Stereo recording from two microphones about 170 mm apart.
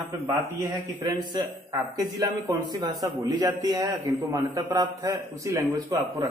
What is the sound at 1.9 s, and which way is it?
A man's voice, 20° right (ahead or behind).